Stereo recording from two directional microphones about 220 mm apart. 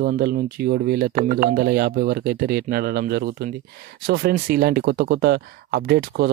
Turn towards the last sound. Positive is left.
turn(degrees=-45)  # may be behind; listen again after turning